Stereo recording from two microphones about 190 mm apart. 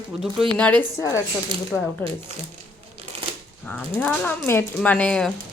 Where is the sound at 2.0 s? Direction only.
10° left (ahead or behind).